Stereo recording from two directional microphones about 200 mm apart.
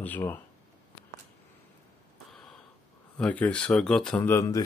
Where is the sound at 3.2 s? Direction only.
5° left (ahead or behind).